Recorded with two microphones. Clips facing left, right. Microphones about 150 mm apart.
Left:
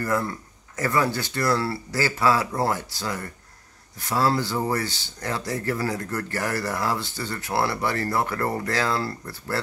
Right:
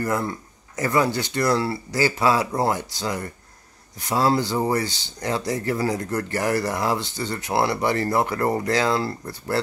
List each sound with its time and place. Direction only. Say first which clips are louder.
0.0 s speech: right 1 dB; 20° right (ahead or behind)